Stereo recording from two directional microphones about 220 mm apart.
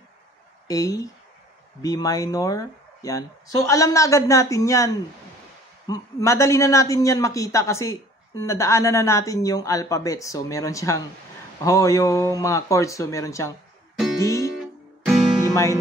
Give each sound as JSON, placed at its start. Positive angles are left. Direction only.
{"t": 0.7, "sound": "a man's voice", "side_deg": 15}
{"t": 14.2, "sound": "music", "side_deg": 15}
{"t": 15.5, "sound": "speech", "side_deg": 15}